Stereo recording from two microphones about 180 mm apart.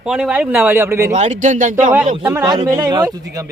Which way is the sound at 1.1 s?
40° right (ahead or behind).